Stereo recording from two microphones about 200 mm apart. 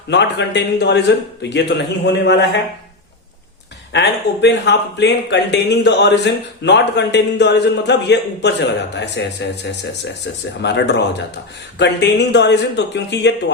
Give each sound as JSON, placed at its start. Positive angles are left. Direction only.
{"t": 0.1, "sound": "speech", "side_deg": 60}
{"t": 3.9, "sound": "speech", "side_deg": 60}
{"t": 10.6, "sound": "speech", "side_deg": 60}